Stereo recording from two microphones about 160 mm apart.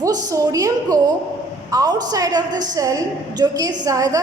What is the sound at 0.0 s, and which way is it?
A woman's voice, 20° right (ahead or behind).